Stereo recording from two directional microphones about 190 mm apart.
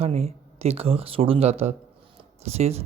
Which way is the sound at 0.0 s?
35° right (ahead or behind).